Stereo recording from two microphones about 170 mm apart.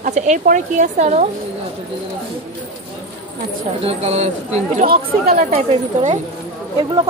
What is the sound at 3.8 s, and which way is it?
Speech, 40° right (ahead or behind).